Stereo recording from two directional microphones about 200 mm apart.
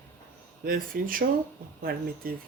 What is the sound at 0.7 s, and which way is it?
Speech, 45° right (ahead or behind).